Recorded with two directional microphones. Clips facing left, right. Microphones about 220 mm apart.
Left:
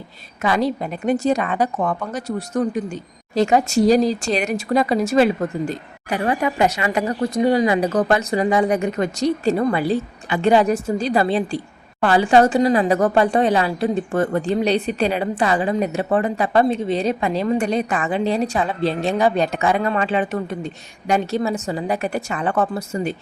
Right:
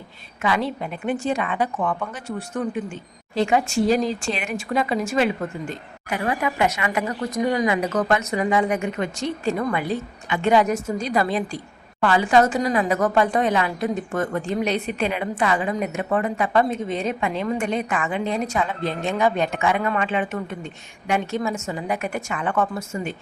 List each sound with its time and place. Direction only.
0.4 s speech: 40° left (ahead or behind)